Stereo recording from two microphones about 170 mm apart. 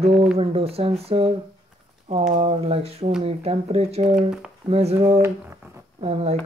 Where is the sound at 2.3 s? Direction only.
35° right (ahead or behind).